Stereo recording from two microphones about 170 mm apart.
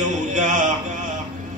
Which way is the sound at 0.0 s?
45° right (ahead or behind).